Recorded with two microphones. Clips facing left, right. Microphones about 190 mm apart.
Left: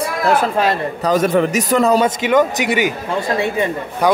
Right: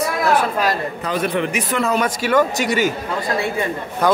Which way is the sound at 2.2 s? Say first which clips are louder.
Left 2 dB; 20° left (ahead or behind).